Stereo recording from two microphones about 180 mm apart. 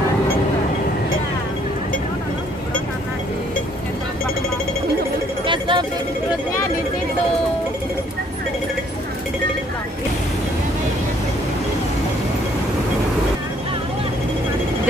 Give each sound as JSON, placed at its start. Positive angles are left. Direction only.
{"t": 5.5, "sound": "vehicle", "side_deg": -25}